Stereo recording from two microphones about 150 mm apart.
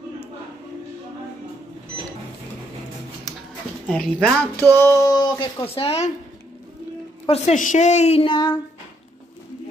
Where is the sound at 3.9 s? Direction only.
5° left (ahead or behind).